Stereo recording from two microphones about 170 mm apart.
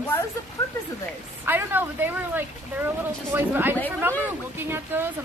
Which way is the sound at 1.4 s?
10° right (ahead or behind).